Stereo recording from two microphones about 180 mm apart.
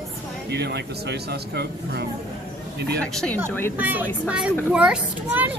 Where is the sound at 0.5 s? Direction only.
65° right (ahead or behind).